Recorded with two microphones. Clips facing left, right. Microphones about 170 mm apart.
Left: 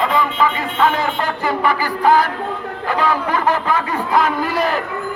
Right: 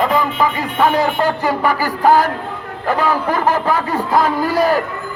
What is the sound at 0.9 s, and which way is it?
Speech, 40° right (ahead or behind).